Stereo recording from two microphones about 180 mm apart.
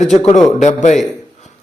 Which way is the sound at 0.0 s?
40° left (ahead or behind).